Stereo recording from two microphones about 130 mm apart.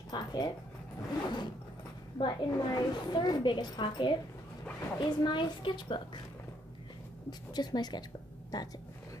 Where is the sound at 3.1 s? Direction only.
35° left (ahead or behind).